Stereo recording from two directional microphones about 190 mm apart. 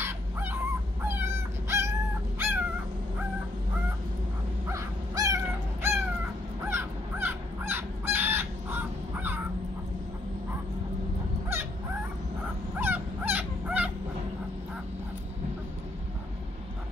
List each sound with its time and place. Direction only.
0.0 s dog: 10° right (ahead or behind)
4.7 s dog: 15° right (ahead or behind)
6.6 s crow: 10° right (ahead or behind)
12.7 s dog: 10° right (ahead or behind)